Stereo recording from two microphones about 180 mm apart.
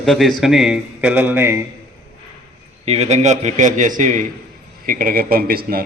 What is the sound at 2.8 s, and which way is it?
A man's voice, 35° right (ahead or behind).